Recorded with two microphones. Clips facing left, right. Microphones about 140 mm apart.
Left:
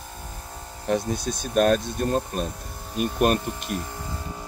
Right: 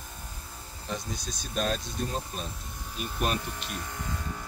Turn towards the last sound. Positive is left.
turn(degrees=50)  # may be behind; listen again after turning